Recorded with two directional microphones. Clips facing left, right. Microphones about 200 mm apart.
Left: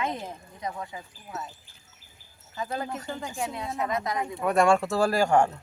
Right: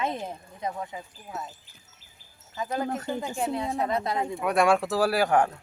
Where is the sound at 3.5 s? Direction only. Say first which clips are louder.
Right 3 dB; 35° right (ahead or behind).